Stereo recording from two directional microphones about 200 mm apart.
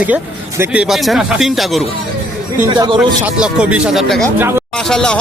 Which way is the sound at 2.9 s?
5° right (ahead or behind).